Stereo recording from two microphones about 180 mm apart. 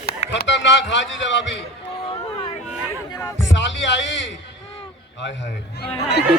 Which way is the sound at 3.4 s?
90° left.